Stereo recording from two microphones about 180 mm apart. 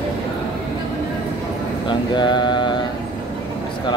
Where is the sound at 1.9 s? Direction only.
25° left (ahead or behind).